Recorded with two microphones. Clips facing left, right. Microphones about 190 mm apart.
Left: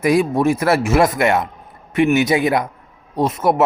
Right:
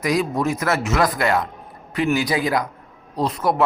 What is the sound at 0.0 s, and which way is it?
A man's voice, 30° left (ahead or behind).